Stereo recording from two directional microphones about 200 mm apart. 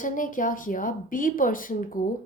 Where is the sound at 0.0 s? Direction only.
40° left (ahead or behind).